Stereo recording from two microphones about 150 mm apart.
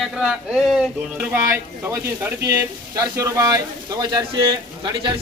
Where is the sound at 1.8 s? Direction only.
15° right (ahead or behind).